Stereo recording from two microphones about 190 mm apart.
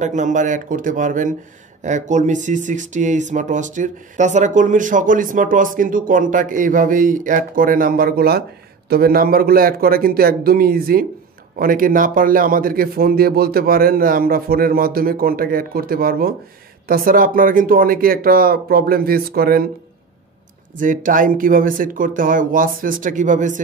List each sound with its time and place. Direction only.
0.0 s speech: 40° right (ahead or behind)
20.7 s speech: 45° right (ahead or behind)